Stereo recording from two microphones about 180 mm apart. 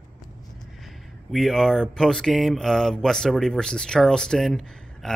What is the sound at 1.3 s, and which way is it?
Speech, centre (ahead or behind).